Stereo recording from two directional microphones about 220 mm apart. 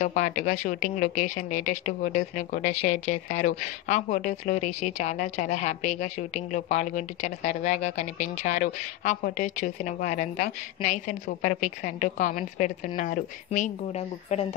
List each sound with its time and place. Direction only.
0.0 s speech: 35° left (ahead or behind)